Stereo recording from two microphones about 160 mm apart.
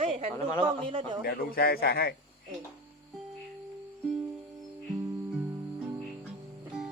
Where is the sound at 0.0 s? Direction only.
35° right (ahead or behind).